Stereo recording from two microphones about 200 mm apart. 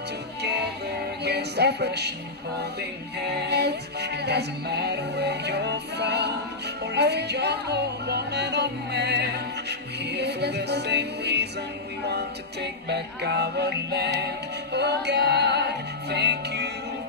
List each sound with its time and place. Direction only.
0.4 s music: 55° right (ahead or behind)
3.4 s music: 55° right (ahead or behind)